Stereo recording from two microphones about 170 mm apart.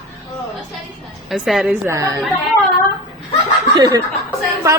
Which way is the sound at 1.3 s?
Centre (ahead or behind).